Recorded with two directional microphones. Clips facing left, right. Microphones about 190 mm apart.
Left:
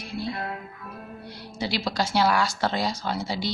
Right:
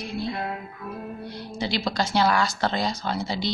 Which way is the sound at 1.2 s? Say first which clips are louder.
Even; 10° left (ahead or behind).